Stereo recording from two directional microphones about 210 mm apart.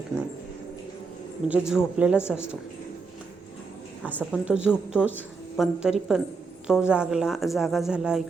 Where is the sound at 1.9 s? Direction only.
5° right (ahead or behind).